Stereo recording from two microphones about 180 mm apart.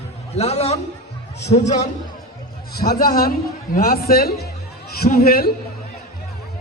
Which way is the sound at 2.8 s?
55° left (ahead or behind).